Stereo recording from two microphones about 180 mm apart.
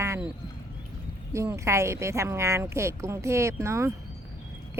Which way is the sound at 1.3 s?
15° right (ahead or behind).